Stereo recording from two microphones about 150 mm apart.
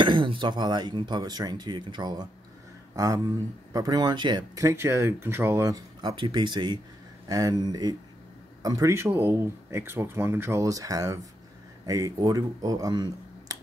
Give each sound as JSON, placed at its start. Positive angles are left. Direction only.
{"t": 0.0, "sound": "speech", "side_deg": -35}